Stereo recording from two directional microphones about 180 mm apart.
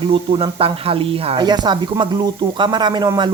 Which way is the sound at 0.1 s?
30° right (ahead or behind).